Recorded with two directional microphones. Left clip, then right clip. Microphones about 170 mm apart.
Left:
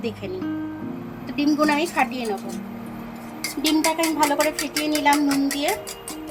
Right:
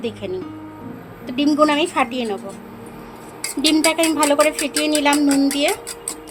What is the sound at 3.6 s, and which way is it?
Speech, 65° right (ahead or behind).